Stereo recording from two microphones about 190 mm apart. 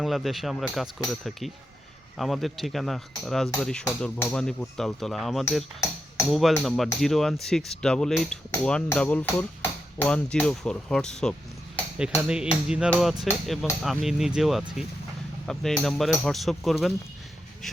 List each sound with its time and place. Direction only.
0.0 s speech: centre (ahead or behind)